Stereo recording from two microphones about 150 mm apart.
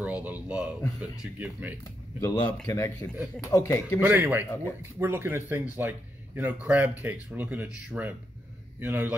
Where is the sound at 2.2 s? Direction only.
20° left (ahead or behind).